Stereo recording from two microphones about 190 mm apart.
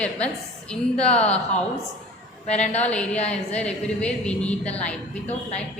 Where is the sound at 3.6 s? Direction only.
5° left (ahead or behind).